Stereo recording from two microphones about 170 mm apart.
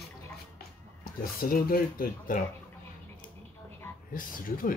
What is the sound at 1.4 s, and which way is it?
Speech, 60° left (ahead or behind).